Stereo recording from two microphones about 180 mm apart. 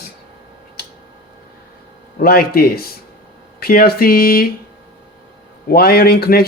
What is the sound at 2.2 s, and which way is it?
Speech, 55° left (ahead or behind).